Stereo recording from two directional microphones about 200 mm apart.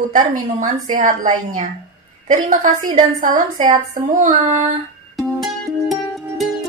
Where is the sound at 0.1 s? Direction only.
40° right (ahead or behind).